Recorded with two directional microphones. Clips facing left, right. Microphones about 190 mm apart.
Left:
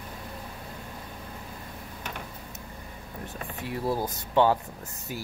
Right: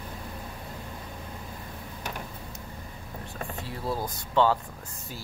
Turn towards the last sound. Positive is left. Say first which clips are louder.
# left 4 dB
turn(degrees=10)  # may be behind; listen again after turning